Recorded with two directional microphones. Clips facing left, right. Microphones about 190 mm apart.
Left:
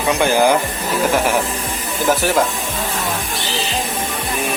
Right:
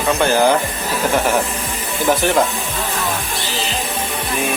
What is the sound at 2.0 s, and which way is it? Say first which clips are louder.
Speech: right 1 dB; centre (ahead or behind).